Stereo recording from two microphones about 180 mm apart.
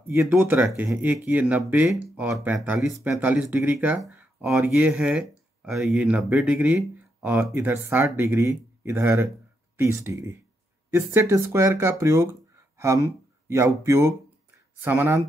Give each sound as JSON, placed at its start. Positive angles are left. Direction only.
{"t": 0.0, "sound": "speech", "side_deg": -15}